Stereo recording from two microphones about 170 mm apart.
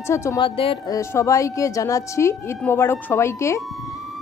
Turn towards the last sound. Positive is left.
turn(degrees=15)  # may be behind; listen again after turning